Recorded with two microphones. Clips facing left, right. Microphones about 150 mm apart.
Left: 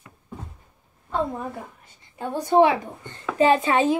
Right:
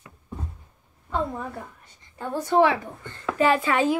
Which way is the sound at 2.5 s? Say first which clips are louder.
Left 3 dB; 20° left (ahead or behind).